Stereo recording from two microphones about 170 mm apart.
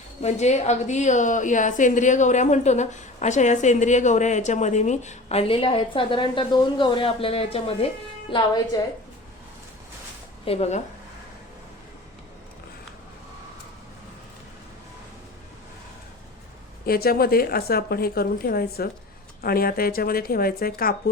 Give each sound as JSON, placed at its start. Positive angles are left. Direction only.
{"t": 0.2, "sound": "a woman's voice", "side_deg": 40}
{"t": 10.4, "sound": "speech", "side_deg": 35}
{"t": 16.8, "sound": "a woman's voice", "side_deg": 60}